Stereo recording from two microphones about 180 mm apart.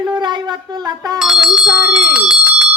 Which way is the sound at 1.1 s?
5° right (ahead or behind).